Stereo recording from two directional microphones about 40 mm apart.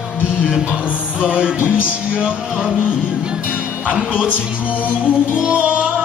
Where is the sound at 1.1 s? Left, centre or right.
Right.